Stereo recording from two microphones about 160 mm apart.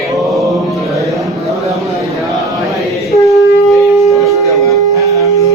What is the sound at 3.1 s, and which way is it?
Shofar, 20° left (ahead or behind).